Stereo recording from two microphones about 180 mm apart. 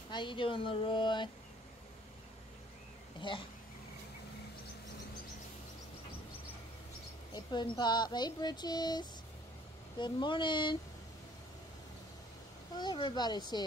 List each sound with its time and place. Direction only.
0.1 s speech: 25° left (ahead or behind)
3.2 s speech: 25° left (ahead or behind)
7.3 s speech: 25° left (ahead or behind)
12.7 s speech: 25° left (ahead or behind)